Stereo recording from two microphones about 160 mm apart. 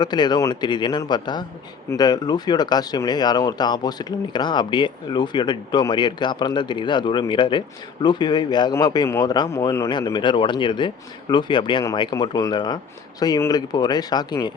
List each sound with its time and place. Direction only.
0.0 s speech: 25° left (ahead or behind)